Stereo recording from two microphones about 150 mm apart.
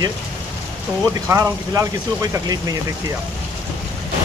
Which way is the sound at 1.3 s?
20° right (ahead or behind).